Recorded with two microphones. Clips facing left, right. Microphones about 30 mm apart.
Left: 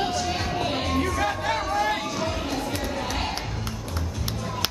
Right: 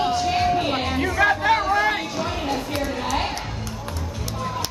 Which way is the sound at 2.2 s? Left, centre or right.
Centre.